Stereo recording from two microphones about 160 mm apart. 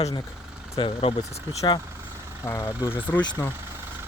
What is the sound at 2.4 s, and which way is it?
Speech, 15° left (ahead or behind).